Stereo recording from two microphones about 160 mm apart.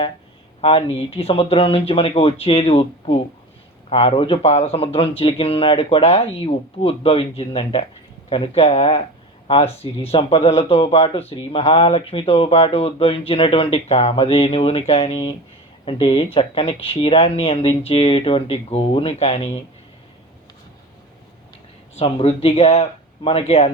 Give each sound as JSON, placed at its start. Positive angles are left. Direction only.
{"t": 0.6, "sound": "speech", "side_deg": 35}
{"t": 10.1, "sound": "speech", "side_deg": 35}
{"t": 21.9, "sound": "speech", "side_deg": 40}